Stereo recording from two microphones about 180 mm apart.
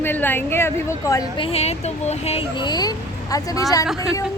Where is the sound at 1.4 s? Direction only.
35° left (ahead or behind).